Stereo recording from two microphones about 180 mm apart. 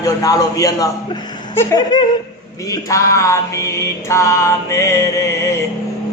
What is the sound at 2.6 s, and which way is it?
Music, 20° left (ahead or behind).